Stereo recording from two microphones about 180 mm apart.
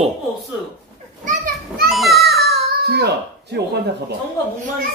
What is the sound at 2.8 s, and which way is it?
Speech, 65° right (ahead or behind).